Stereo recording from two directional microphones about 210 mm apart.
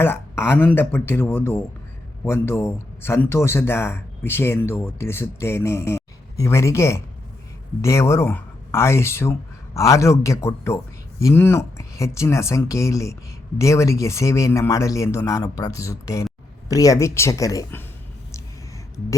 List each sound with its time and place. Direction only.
0.0 s speech: 10° left (ahead or behind)